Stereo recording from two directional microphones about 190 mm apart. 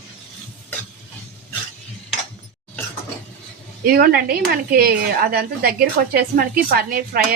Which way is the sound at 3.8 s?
50° right (ahead or behind).